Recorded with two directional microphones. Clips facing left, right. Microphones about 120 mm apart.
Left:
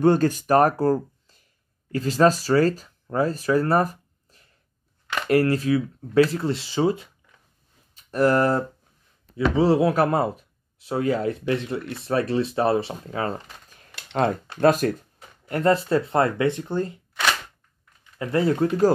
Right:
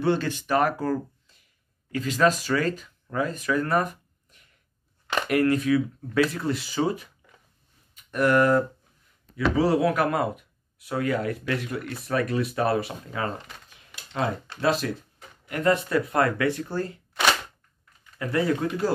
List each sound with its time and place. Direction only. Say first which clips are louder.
0.0 s speech: left 6 dB; 45° left (ahead or behind)
14.1 s speech: left 5 dB; 50° left (ahead or behind)
15.4 s speech: left 3 dB; 35° left (ahead or behind)
18.2 s speech: left 3 dB; 30° left (ahead or behind)